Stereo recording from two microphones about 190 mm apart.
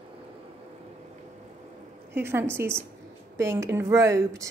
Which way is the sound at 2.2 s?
10° right (ahead or behind).